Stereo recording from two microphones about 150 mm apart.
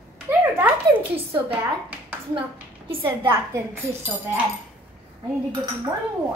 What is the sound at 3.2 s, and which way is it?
Speech, 15° right (ahead or behind).